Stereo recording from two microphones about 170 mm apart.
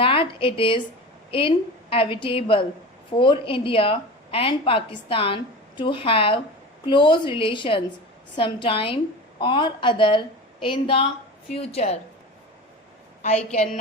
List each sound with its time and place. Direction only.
0.0 s a woman's voice: 30° left (ahead or behind)
13.2 s a woman's voice: 40° left (ahead or behind)